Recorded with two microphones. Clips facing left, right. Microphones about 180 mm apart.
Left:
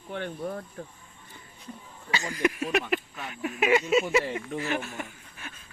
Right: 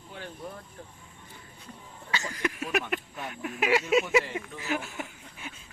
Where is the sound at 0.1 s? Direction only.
60° left (ahead or behind).